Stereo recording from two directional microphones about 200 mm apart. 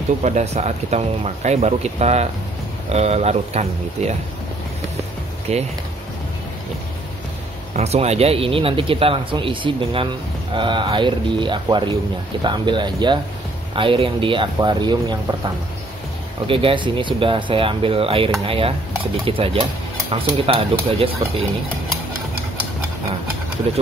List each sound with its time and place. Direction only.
0.2 s speech: 35° right (ahead or behind)
5.5 s speech: 30° right (ahead or behind)
7.7 s speech: 30° right (ahead or behind)
16.4 s speech: 25° right (ahead or behind)